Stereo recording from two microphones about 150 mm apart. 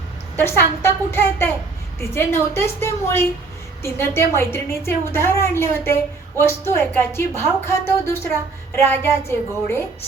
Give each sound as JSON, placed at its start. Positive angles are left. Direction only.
{"t": 0.3, "sound": "a woman's voice", "side_deg": 15}
{"t": 2.6, "sound": "a woman's voice", "side_deg": 15}